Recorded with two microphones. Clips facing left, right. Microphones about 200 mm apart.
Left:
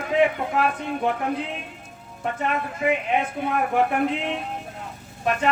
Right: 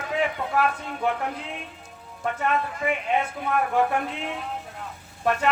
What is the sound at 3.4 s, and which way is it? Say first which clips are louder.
Speech: left 3 dB; 25° left (ahead or behind).